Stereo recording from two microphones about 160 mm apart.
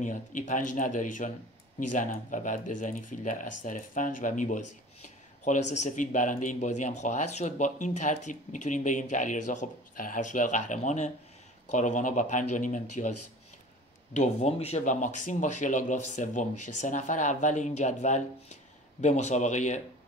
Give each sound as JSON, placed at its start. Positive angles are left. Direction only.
{"t": 0.0, "sound": "speech", "side_deg": 55}
{"t": 14.1, "sound": "speech", "side_deg": 45}